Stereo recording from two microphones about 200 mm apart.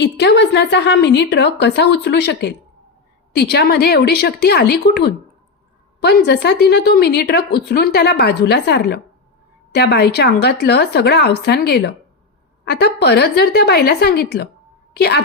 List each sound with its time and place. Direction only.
0.0 s a woman's voice: 60° left (ahead or behind)